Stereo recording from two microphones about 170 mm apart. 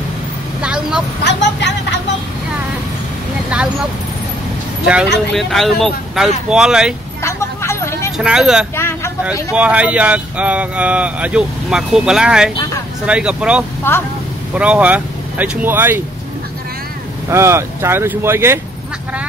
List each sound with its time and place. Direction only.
0.6 s vehicle: 5° right (ahead or behind)
1.2 s speech: 90° left
4.8 s speech: 5° right (ahead or behind)
7.2 s vehicle: 15° left (ahead or behind)
8.2 s speech: 5° right (ahead or behind)
8.7 s vehicle: 15° left (ahead or behind)
9.2 s speech: 5° right (ahead or behind)
17.3 s speech: 15° right (ahead or behind)